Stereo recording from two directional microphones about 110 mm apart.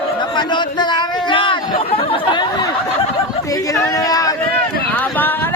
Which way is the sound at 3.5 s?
30° left (ahead or behind).